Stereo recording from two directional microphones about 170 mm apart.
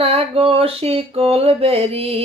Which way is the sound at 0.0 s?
35° right (ahead or behind).